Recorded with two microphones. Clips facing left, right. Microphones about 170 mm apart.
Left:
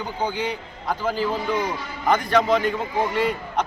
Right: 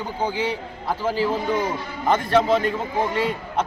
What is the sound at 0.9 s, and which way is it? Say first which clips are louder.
A man's voice: right 1 dB; 5° right (ahead or behind).